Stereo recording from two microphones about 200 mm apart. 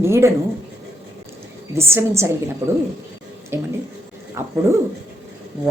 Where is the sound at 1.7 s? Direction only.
15° right (ahead or behind).